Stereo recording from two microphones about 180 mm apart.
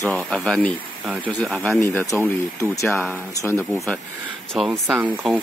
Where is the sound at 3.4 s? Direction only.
15° left (ahead or behind).